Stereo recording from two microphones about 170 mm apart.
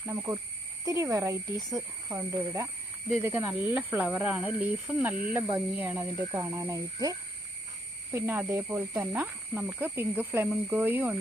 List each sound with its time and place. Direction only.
0.0 s speech: 15° right (ahead or behind)